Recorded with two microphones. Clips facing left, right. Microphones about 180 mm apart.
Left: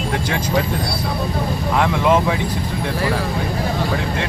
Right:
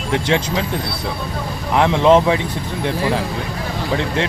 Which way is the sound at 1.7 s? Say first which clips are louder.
Right 5 dB; 20° right (ahead or behind).